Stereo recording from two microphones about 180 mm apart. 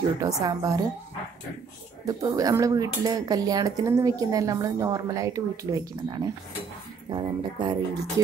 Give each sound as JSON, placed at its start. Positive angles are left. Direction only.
{"t": 0.2, "sound": "speech", "side_deg": -20}
{"t": 2.0, "sound": "speech", "side_deg": -20}